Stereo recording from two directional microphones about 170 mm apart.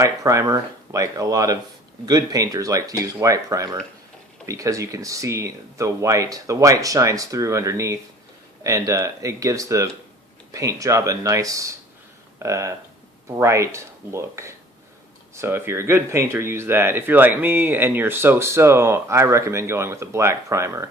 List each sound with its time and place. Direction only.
0.0 s speech: 20° right (ahead or behind)